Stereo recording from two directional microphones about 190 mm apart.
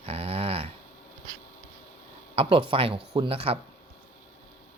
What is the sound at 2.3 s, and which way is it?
Speech, 30° right (ahead or behind).